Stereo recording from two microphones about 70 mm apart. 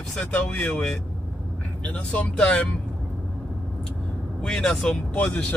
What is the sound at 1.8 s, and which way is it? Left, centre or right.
Speech, left.